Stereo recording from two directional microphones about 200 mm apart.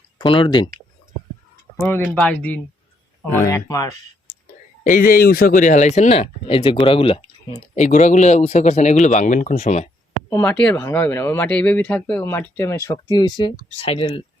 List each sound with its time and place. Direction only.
0.2 s speech: 25° left (ahead or behind)
1.7 s speech: 10° left (ahead or behind)
4.8 s speech: 40° left (ahead or behind)
10.2 s speech: 10° left (ahead or behind); by 14.3 s 30° left (ahead or behind)